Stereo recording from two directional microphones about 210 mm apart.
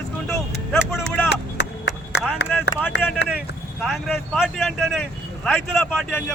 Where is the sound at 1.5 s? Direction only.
55° left (ahead or behind).